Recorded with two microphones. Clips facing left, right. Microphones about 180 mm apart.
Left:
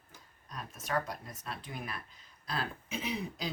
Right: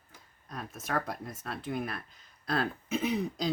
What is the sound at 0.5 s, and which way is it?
Speech, 65° right (ahead or behind).